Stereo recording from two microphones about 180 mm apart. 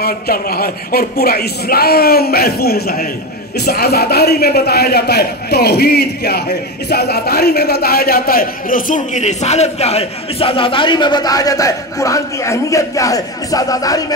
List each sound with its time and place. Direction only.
0.0 s a man's voice: 55° left (ahead or behind); by 14.0 s 20° left (ahead or behind)